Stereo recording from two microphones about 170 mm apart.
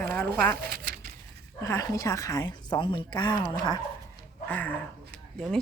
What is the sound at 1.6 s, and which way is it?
Speech, 20° left (ahead or behind).